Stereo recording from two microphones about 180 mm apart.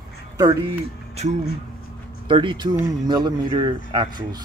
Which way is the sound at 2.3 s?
25° right (ahead or behind).